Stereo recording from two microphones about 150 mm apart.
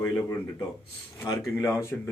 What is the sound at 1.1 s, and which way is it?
Speech, 20° left (ahead or behind).